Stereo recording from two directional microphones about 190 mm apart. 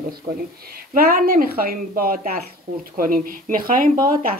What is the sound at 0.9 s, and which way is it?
Speech, 50° right (ahead or behind).